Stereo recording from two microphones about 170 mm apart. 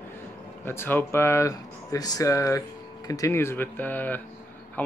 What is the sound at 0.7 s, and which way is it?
Speech, 10° left (ahead or behind).